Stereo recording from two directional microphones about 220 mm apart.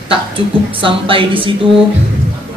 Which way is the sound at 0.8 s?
25° right (ahead or behind).